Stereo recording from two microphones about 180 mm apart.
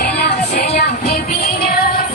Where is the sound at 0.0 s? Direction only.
60° left (ahead or behind).